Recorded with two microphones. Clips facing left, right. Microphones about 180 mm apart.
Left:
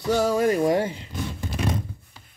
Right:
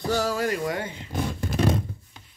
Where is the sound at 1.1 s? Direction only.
45° right (ahead or behind).